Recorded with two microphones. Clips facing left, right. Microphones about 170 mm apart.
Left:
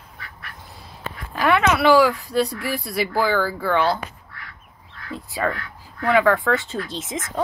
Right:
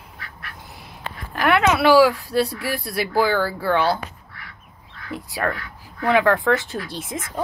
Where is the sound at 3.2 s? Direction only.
Centre (ahead or behind).